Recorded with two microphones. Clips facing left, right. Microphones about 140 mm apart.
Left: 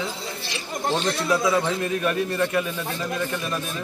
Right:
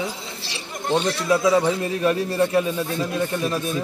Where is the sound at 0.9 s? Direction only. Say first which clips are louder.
Right 4 dB; 15° right (ahead or behind).